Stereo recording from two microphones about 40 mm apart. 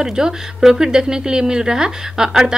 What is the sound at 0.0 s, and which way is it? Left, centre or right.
A woman's voice, centre.